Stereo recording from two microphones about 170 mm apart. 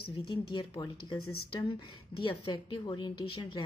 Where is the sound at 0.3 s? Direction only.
25° left (ahead or behind).